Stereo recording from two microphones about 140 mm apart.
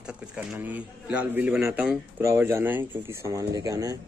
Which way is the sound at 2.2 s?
20° right (ahead or behind).